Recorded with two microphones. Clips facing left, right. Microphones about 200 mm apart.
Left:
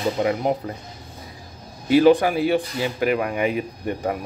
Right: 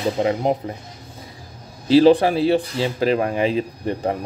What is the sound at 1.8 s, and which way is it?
Speech, 30° right (ahead or behind).